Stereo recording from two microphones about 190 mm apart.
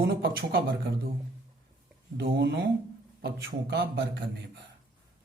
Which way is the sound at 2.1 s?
65° right (ahead or behind).